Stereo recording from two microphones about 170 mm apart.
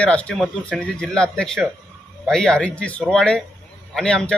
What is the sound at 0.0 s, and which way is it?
Speech, 5° left (ahead or behind).